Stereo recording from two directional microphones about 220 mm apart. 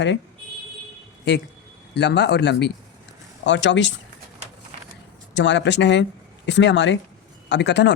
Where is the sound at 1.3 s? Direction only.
50° left (ahead or behind).